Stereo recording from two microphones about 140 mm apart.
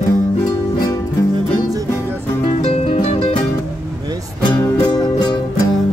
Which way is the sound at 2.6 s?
50° left (ahead or behind).